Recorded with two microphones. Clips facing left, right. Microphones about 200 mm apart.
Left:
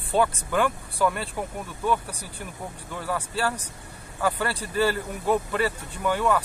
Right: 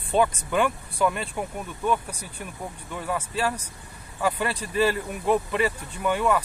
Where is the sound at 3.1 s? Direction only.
15° right (ahead or behind).